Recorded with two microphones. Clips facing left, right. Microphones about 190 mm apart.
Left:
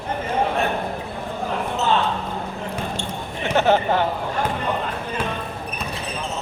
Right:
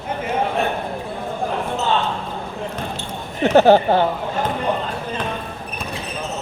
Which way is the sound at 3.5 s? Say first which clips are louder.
Right 6 dB; 35° right (ahead or behind).